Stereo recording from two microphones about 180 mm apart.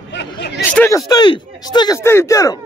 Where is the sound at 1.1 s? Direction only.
25° left (ahead or behind).